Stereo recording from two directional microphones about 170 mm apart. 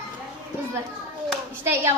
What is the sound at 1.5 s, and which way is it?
Hands, 15° right (ahead or behind).